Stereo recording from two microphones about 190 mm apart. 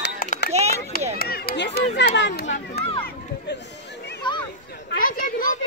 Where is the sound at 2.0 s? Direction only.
70° left (ahead or behind).